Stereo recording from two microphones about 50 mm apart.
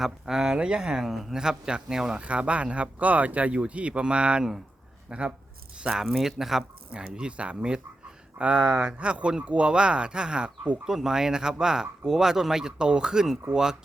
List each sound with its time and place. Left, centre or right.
0.0 s speech: centre
0.9 s speech: centre
2.1 s speech: right
5.7 s a sound: right
6.0 s speech: centre
6.9 s speech: centre
10.8 s speech: centre